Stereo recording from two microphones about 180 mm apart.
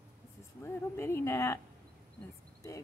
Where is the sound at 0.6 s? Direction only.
15° left (ahead or behind).